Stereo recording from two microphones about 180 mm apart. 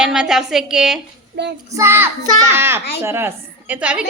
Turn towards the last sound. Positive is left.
turn(degrees=-5)  # may be behind; listen again after turning